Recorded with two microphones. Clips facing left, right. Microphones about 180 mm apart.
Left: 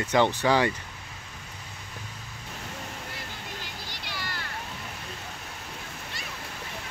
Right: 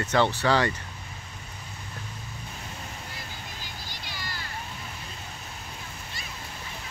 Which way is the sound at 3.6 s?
70° left (ahead or behind).